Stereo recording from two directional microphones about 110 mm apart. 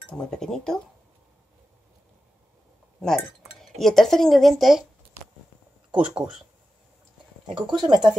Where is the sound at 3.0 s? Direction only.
5° left (ahead or behind).